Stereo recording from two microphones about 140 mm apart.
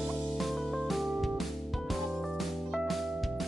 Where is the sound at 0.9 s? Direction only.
Centre (ahead or behind).